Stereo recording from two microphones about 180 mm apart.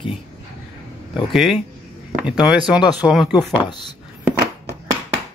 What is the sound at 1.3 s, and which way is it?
Speech, centre (ahead or behind).